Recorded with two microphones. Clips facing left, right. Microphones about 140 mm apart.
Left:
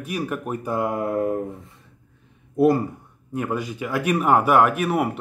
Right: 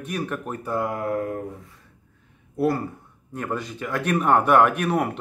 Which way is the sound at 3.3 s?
10° left (ahead or behind).